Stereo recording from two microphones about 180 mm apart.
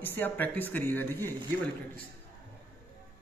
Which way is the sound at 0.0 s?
10° left (ahead or behind).